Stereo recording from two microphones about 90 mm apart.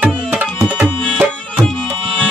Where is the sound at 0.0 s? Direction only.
20° right (ahead or behind).